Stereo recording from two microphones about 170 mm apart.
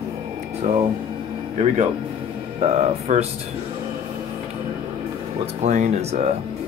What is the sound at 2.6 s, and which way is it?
Speech, 40° right (ahead or behind).